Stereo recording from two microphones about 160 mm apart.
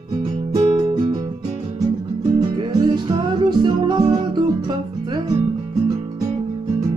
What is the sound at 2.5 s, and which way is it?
Music, 25° right (ahead or behind).